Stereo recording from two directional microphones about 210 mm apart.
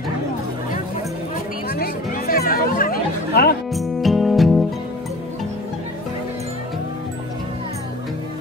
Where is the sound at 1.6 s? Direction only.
45° left (ahead or behind).